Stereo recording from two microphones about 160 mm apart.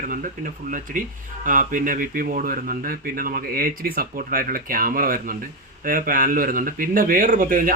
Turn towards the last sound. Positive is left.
turn(degrees=-60)  # may be behind; listen again after turning